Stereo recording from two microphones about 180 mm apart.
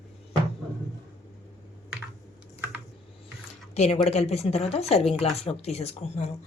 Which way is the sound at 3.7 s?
35° left (ahead or behind).